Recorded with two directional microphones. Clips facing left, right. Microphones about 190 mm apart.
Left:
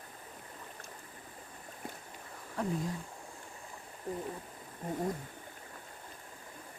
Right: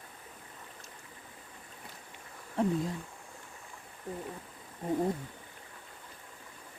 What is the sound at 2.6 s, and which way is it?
Speech, 25° right (ahead or behind).